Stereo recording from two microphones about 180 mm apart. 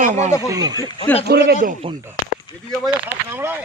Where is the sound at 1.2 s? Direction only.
65° right (ahead or behind).